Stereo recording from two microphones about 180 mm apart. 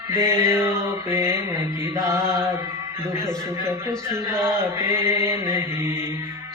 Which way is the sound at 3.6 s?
15° right (ahead or behind).